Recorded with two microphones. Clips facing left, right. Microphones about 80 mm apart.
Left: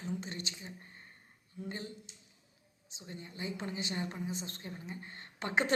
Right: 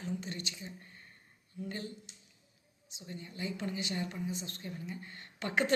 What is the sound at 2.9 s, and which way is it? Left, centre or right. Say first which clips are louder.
A woman's voice: right 1 dB; left.